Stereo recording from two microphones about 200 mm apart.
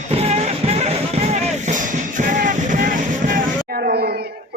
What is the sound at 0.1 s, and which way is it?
Music, 30° right (ahead or behind).